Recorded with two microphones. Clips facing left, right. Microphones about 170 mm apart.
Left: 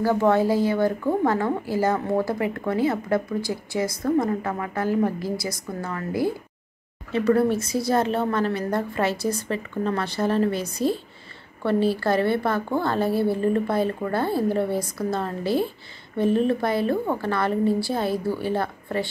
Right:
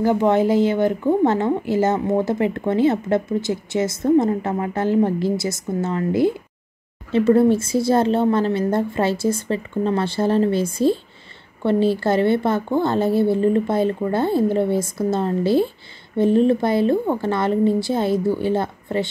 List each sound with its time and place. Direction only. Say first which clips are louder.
0.0 s speech: right 3 dB; 20° right (ahead or behind)